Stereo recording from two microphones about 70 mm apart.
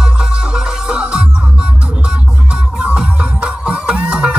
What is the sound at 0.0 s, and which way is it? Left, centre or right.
Music, centre.